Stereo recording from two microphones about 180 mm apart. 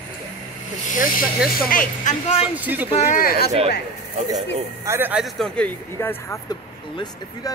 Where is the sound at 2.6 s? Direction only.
10° right (ahead or behind).